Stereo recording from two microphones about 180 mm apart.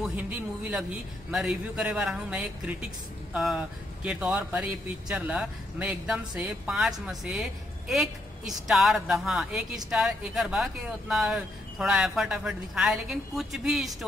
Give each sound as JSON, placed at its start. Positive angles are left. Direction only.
{"t": 1.3, "sound": "a man's voice", "side_deg": -5}